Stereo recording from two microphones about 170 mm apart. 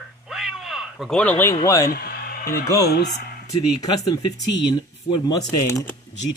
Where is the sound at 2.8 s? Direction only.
65° left (ahead or behind).